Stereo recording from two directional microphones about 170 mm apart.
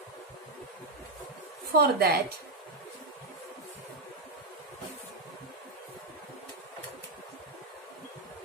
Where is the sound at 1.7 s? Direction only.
65° right (ahead or behind).